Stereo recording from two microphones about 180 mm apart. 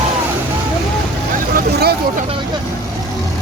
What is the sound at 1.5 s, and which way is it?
Vehicle, 60° right (ahead or behind).